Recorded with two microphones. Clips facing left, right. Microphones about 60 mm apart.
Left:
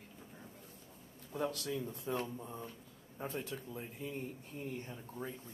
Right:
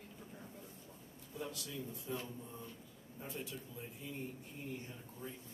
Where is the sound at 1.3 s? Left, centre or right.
Left.